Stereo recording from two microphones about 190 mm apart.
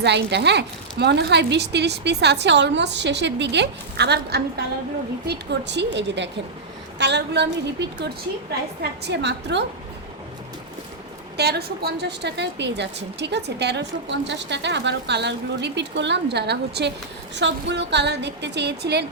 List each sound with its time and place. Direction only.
0.0 s a woman's voice: 65° right (ahead or behind)
11.3 s a woman's voice: 60° right (ahead or behind)